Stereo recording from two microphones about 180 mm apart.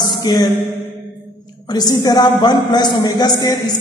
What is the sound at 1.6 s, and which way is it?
Speech, 20° left (ahead or behind).